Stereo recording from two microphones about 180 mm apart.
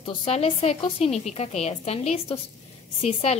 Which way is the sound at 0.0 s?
35° left (ahead or behind).